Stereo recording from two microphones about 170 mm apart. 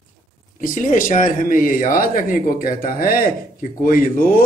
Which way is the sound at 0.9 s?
50° left (ahead or behind).